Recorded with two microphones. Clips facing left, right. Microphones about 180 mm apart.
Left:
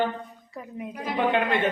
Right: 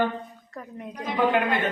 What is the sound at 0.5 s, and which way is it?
Speech, 5° left (ahead or behind).